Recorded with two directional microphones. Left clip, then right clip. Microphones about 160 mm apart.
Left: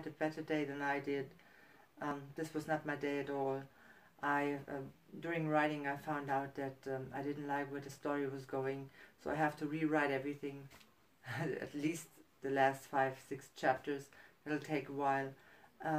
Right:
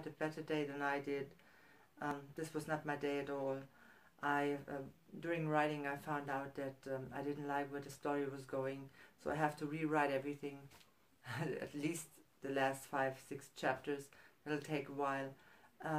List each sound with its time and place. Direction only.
0.0 s speech: 20° right (ahead or behind)